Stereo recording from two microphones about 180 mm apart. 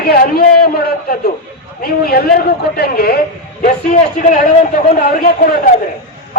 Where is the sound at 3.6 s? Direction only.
45° left (ahead or behind).